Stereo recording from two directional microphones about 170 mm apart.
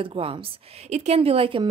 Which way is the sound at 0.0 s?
30° right (ahead or behind).